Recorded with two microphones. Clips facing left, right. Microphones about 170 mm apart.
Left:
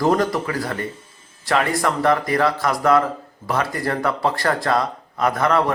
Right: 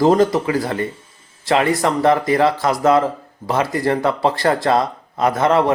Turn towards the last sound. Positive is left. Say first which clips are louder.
# right 3 dB
turn(degrees=-25)  # may be behind; listen again after turning